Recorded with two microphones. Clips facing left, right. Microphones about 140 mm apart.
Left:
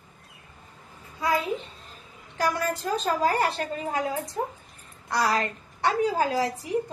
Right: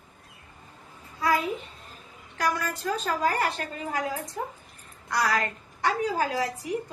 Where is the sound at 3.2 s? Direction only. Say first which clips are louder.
Even; 30° left (ahead or behind).